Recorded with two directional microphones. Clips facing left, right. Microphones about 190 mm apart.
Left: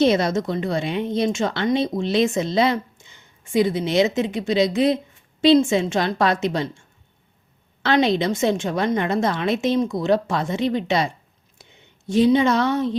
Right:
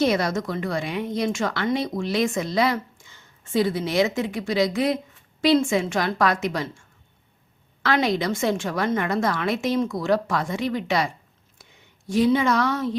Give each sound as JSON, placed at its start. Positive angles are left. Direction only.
{"t": 0.0, "sound": "a woman's voice", "side_deg": 25}
{"t": 7.8, "sound": "a woman's voice", "side_deg": 25}